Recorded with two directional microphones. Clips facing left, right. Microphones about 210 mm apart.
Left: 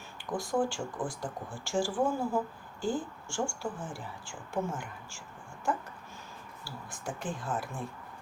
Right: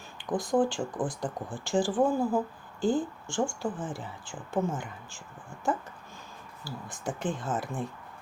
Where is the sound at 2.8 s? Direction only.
20° right (ahead or behind).